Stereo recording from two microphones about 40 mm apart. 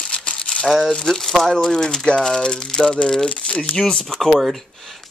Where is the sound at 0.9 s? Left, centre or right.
Centre.